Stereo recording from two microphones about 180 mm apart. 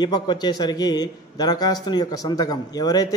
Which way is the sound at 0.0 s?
25° left (ahead or behind).